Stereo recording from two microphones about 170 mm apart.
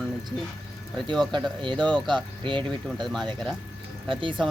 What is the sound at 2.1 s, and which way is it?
Speech, 30° right (ahead or behind).